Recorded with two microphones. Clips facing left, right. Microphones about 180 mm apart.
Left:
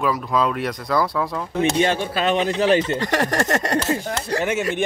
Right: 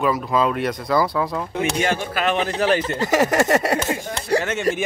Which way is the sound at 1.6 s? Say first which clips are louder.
Left 3 dB; 25° left (ahead or behind).